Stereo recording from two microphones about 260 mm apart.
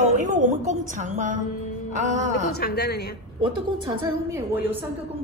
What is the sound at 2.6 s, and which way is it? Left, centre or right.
Speech, left.